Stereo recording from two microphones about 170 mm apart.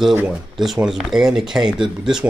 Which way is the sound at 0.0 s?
5° right (ahead or behind).